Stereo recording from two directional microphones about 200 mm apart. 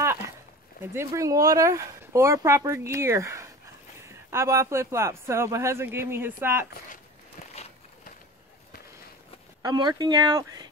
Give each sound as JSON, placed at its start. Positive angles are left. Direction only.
{"t": 0.9, "sound": "speech", "side_deg": -15}
{"t": 9.6, "sound": "speech", "side_deg": -20}